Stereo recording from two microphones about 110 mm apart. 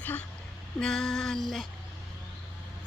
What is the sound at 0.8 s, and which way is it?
Speech, 5° left (ahead or behind).